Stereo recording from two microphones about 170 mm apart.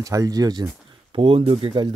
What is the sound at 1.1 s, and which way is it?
Speech, 35° right (ahead or behind).